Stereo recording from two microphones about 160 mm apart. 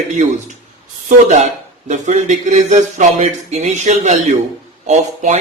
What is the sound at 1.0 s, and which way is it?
A man's voice, 50° right (ahead or behind).